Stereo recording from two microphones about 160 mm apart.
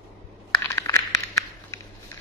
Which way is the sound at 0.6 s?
15° left (ahead or behind).